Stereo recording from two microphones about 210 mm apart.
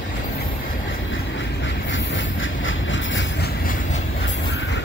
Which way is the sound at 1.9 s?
65° left (ahead or behind).